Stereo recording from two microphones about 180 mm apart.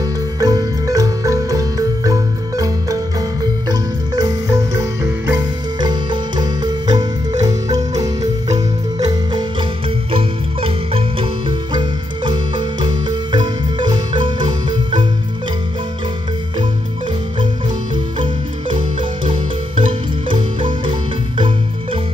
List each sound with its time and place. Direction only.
0.4 s music: 20° right (ahead or behind)
3.6 s marimba: 20° right (ahead or behind)
5.8 s music: 25° right (ahead or behind)
7.4 s marimba: 20° right (ahead or behind)
12.3 s marimba: 25° right (ahead or behind)
17.9 s music: 25° right (ahead or behind)